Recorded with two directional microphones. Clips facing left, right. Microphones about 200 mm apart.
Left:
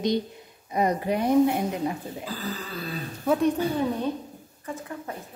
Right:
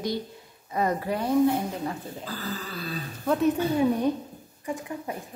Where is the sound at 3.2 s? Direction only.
Centre (ahead or behind).